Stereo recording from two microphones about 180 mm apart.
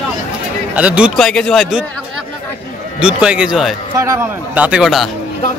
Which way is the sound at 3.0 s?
5° right (ahead or behind).